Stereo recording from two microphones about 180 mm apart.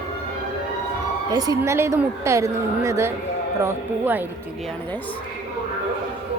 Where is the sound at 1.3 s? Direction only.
20° right (ahead or behind).